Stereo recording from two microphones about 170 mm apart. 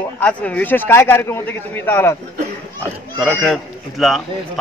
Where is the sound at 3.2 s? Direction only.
Centre (ahead or behind).